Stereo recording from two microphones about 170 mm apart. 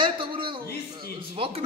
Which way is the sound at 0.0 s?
30° right (ahead or behind).